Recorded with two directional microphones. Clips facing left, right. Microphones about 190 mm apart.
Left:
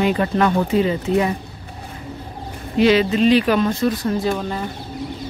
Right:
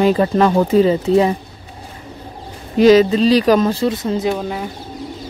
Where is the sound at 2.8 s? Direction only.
40° right (ahead or behind); by 4.6 s 10° right (ahead or behind).